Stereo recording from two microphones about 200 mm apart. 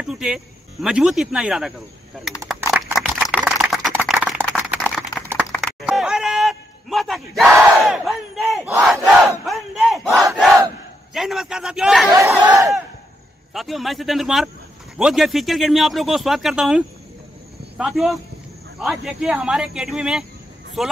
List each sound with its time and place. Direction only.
0.0 s speech: 5° right (ahead or behind)
2.7 s a sound: centre (ahead or behind)
3.4 s typing: centre (ahead or behind)
5.5 s a sound: centre (ahead or behind)
9.0 s battle cry: 5° left (ahead or behind)
10.3 s crowd: centre (ahead or behind)
11.1 s speech: centre (ahead or behind)
12.1 s crowd: 15° right (ahead or behind)
13.5 s speech: centre (ahead or behind)